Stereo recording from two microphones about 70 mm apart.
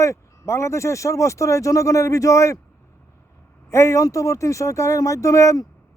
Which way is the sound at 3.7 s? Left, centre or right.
Left.